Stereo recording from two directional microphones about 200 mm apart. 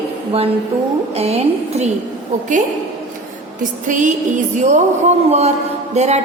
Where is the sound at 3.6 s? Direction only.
40° right (ahead or behind).